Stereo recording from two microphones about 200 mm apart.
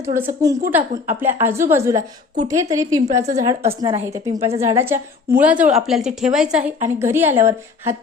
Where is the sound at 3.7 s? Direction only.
25° right (ahead or behind).